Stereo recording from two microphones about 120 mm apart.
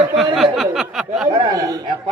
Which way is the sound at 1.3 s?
55° right (ahead or behind).